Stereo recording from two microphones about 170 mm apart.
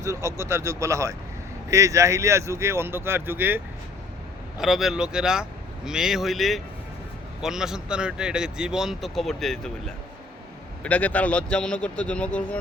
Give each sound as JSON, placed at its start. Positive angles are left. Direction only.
{"t": 0.0, "sound": "a man's voice", "side_deg": -15}
{"t": 4.6, "sound": "speech", "side_deg": 0}
{"t": 10.8, "sound": "speech", "side_deg": 10}